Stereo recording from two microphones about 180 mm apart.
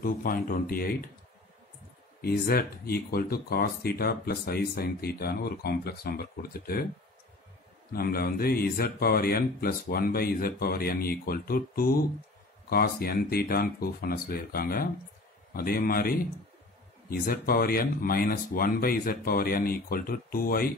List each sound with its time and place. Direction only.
0.0 s speech: 50° left (ahead or behind)
2.2 s speech: 55° left (ahead or behind)
7.9 s speech: 55° left (ahead or behind)